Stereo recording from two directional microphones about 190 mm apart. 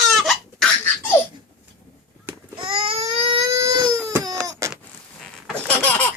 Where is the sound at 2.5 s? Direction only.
25° right (ahead or behind).